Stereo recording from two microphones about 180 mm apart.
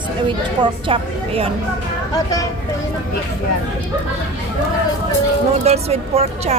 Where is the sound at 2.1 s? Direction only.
20° left (ahead or behind).